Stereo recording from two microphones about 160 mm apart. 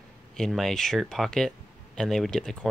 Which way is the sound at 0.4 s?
Centre (ahead or behind).